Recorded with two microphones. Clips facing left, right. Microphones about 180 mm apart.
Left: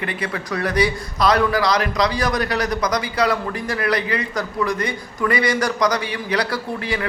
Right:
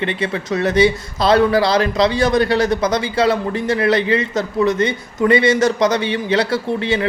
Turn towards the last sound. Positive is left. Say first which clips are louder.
# right 6 dB
turn(degrees=-25)  # may be behind; listen again after turning